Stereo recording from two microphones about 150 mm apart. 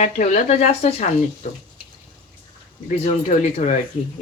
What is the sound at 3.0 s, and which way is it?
Speech, 55° left (ahead or behind).